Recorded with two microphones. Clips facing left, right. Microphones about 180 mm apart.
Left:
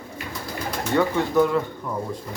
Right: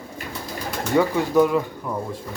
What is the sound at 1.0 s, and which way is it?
Speech, 15° right (ahead or behind).